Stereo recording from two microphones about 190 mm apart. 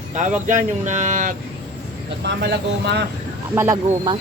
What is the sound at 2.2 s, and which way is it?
Speech, 65° right (ahead or behind).